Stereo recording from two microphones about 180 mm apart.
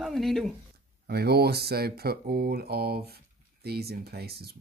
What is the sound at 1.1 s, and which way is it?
Speech, 60° right (ahead or behind).